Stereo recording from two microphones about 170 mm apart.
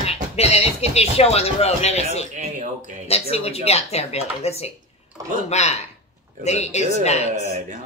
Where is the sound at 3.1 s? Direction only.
35° left (ahead or behind).